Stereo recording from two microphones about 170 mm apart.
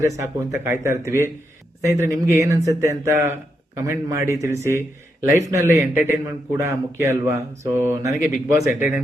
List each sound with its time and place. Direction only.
0.0 s speech: 15° right (ahead or behind)